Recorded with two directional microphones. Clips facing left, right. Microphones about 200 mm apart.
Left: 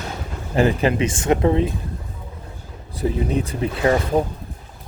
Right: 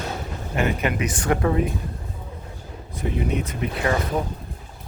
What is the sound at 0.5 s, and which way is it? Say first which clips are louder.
Speech: left 6 dB; 30° left (ahead or behind).